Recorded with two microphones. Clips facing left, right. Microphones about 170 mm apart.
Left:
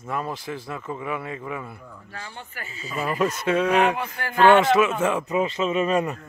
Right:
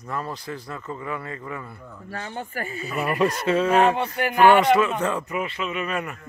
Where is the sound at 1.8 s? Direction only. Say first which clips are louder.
Right 3 dB; 5° right (ahead or behind).